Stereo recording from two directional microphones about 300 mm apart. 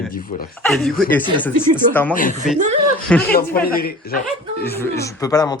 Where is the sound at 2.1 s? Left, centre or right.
Left.